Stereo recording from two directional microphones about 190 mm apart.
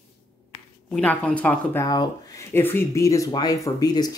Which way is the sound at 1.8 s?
20° left (ahead or behind).